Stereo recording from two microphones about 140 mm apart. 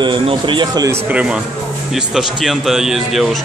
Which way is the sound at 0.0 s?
35° right (ahead or behind).